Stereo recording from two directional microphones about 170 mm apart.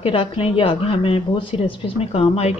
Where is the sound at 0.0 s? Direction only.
30° left (ahead or behind).